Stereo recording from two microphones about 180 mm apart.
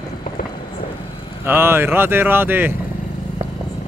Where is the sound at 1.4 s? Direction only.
10° right (ahead or behind).